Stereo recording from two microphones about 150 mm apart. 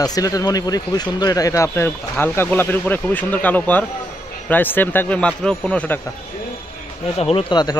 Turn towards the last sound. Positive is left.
turn(degrees=30)  # may be behind; listen again after turning